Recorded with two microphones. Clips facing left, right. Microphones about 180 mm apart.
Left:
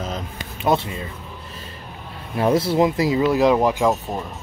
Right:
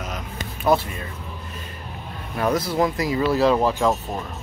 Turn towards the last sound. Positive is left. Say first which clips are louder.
# left 2 dB
turn(degrees=10)  # may be behind; listen again after turning